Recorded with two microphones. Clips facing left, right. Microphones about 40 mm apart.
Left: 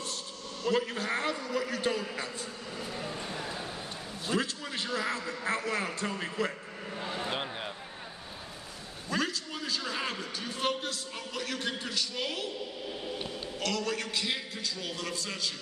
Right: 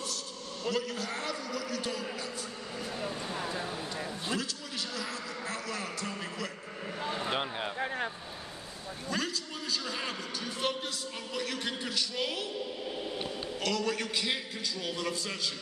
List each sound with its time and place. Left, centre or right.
0.7 s a man's voice: left
3.0 s a man's voice: centre
4.4 s a man's voice: left
7.0 s speech: centre
9.1 s a sound: centre
10.8 s a man's voice: centre
13.6 s a man's voice: centre